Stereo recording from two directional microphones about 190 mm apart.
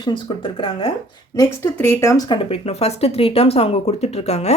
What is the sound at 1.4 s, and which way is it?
Speech, 15° left (ahead or behind).